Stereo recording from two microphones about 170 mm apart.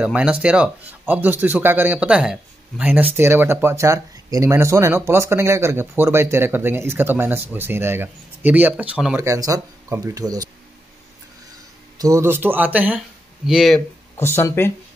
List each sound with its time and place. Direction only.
0.0 s speech: 5° right (ahead or behind)
9.2 s speech: 20° right (ahead or behind)
12.0 s speech: 20° right (ahead or behind); by 13.8 s centre (ahead or behind)
14.1 s speech: 15° left (ahead or behind)